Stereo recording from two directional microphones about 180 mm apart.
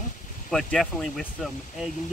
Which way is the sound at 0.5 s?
Centre (ahead or behind).